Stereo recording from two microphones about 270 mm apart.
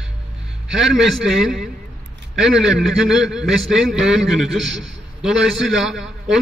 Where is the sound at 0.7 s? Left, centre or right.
Centre.